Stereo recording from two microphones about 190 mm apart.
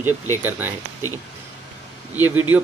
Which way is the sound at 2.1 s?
10° right (ahead or behind).